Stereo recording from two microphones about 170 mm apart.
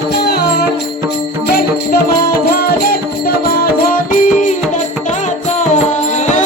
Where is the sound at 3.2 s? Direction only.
60° left (ahead or behind).